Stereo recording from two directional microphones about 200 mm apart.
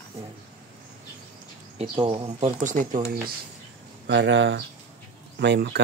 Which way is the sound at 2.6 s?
40° right (ahead or behind).